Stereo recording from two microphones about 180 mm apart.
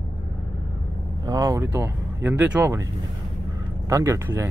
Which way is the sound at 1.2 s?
15° right (ahead or behind).